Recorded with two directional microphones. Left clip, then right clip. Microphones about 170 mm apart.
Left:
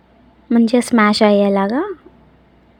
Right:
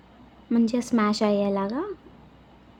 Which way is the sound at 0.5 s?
45° left (ahead or behind).